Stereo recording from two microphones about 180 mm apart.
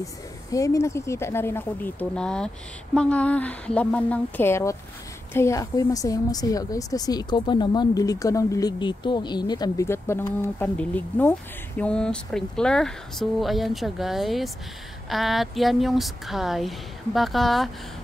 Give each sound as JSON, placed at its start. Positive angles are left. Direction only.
{"t": 0.0, "sound": "a woman's voice", "side_deg": 20}